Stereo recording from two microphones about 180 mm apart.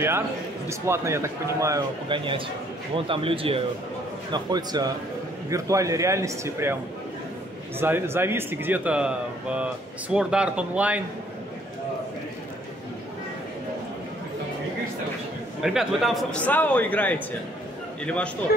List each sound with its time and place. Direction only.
0.7 s speech: 15° right (ahead or behind)
2.0 s a man's voice: 30° right (ahead or behind)
7.8 s speech: 15° right (ahead or behind)
15.6 s a man's voice: centre (ahead or behind)